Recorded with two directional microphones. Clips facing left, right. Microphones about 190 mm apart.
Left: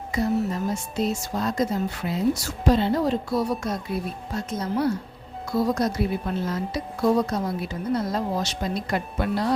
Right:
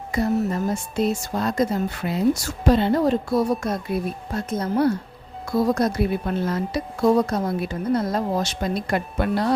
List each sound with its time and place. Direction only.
0.1 s speech: 55° right (ahead or behind)